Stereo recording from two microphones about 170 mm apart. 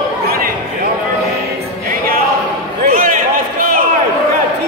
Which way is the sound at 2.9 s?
55° right (ahead or behind).